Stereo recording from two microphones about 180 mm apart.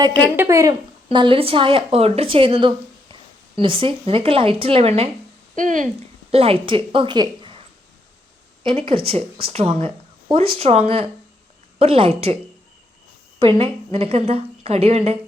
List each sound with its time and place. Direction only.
0.3 s speech: 15° right (ahead or behind)
1.1 s a woman's voice: 30° right (ahead or behind)
5.5 s speech: 45° right (ahead or behind)
6.3 s speech: 30° right (ahead or behind)
8.6 s a woman's voice: 30° right (ahead or behind)
13.6 s a woman's voice: 35° right (ahead or behind)